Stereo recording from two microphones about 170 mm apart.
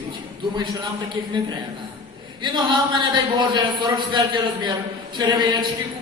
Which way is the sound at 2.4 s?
25° right (ahead or behind).